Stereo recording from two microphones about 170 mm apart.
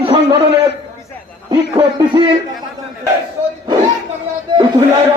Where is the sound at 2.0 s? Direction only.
25° right (ahead or behind).